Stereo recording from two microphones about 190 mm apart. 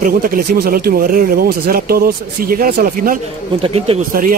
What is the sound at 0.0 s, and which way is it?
Speech, 50° right (ahead or behind).